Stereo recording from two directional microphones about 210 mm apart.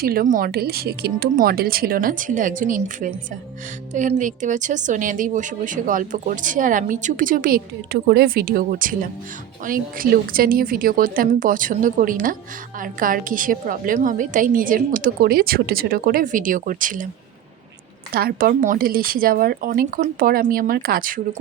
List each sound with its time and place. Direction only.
0.0 s a woman's voice: 45° right (ahead or behind)
18.1 s speech: 45° right (ahead or behind)